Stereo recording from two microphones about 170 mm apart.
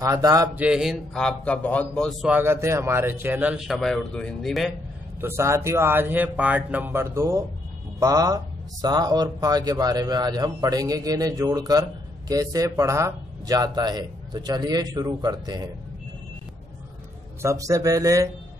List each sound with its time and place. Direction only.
0.0 s speech: 20° right (ahead or behind)
0.6 s a man's voice: 5° right (ahead or behind)
2.2 s speech: 10° right (ahead or behind)
5.2 s speech: 15° right (ahead or behind)
17.4 s speech: 20° right (ahead or behind)